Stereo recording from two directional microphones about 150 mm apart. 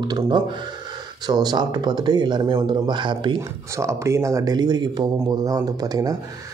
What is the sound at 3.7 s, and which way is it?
Speech, 20° right (ahead or behind).